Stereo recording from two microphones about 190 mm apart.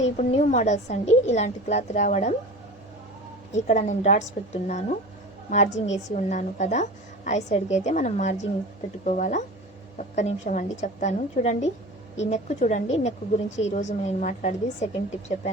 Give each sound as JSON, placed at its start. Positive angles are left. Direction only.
{"t": 0.0, "sound": "a woman's voice", "side_deg": 35}
{"t": 3.5, "sound": "a woman's voice", "side_deg": 40}